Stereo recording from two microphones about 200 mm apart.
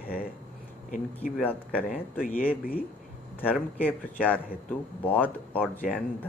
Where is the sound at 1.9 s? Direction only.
45° left (ahead or behind).